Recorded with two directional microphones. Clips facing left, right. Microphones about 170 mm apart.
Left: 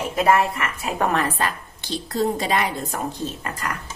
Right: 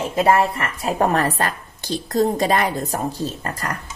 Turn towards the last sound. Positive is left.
turn(degrees=-40)  # may be behind; listen again after turning